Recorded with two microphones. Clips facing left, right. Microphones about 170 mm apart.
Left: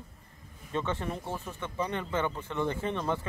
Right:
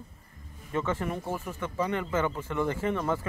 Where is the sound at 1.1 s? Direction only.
5° right (ahead or behind).